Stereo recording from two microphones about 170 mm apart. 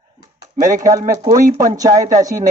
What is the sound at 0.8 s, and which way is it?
Speech, 20° right (ahead or behind).